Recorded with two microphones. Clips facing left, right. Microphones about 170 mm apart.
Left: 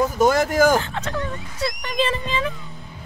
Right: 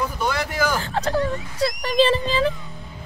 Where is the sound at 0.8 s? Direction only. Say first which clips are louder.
Right 5 dB; 35° right (ahead or behind).